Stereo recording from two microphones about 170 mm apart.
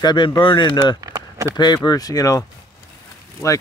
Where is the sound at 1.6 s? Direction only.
25° left (ahead or behind).